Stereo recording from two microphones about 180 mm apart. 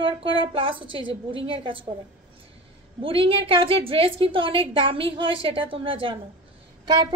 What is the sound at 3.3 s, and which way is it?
A woman's voice, 30° right (ahead or behind).